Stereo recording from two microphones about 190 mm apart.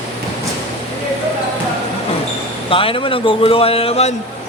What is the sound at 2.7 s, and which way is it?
A man's voice, 30° left (ahead or behind).